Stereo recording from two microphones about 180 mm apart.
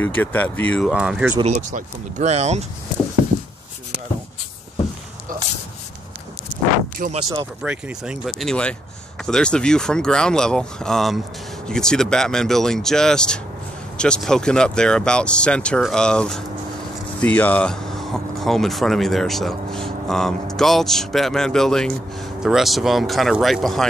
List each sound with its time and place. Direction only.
0.0 s speech: 10° left (ahead or behind)
0.9 s speech: 5° right (ahead or behind)
1.4 s speech: 40° right (ahead or behind)
5.3 s a sound: 50° right (ahead or behind)
7.0 s speech: 50° right (ahead or behind)
7.6 s speech: 5° right (ahead or behind)